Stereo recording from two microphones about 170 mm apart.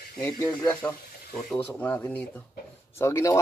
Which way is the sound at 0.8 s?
5° left (ahead or behind).